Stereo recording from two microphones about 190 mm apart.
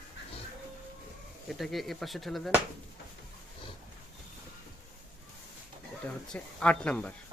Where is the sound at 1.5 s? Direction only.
Centre (ahead or behind).